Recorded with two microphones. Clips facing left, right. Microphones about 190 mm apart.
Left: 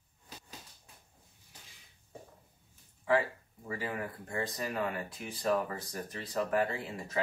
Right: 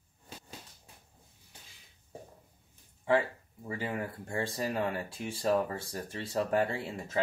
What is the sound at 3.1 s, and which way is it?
Speech, 25° right (ahead or behind).